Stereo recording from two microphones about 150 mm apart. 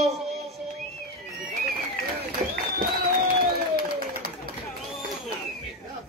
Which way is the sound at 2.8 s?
70° right (ahead or behind).